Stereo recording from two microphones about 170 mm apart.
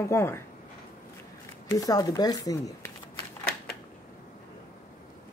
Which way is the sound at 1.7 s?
20° left (ahead or behind).